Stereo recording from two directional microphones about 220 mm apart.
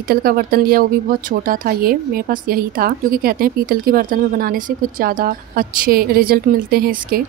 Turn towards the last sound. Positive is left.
turn(degrees=-40)  # may be behind; listen again after turning